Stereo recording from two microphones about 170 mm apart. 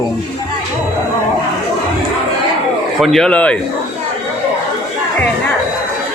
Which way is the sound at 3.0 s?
5° left (ahead or behind).